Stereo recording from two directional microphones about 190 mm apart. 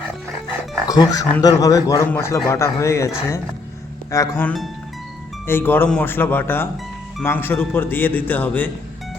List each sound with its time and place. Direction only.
0.9 s speech: 20° left (ahead or behind)
4.1 s speech: 15° left (ahead or behind)